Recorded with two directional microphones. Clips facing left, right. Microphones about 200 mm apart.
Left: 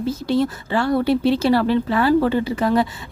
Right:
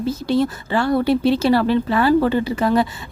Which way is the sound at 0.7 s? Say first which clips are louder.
Right 1 dB; 35° right (ahead or behind).